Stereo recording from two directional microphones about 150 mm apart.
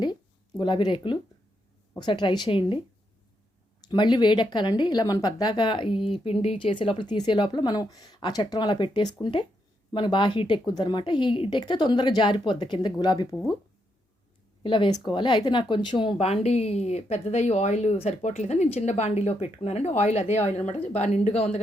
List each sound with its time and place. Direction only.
0.0 s speech: 30° left (ahead or behind)
3.8 s speech: 30° left (ahead or behind)
14.6 s speech: 35° left (ahead or behind)